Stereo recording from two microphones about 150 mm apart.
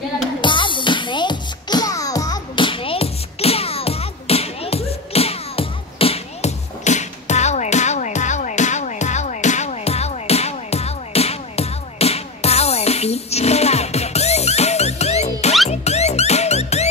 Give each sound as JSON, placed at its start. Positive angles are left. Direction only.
{"t": 0.4, "sound": "music", "side_deg": 35}